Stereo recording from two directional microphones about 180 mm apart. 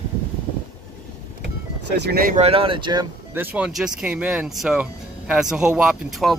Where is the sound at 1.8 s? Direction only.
65° right (ahead or behind).